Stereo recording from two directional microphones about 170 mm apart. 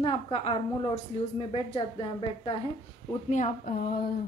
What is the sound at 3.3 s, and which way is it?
Speech, 45° left (ahead or behind).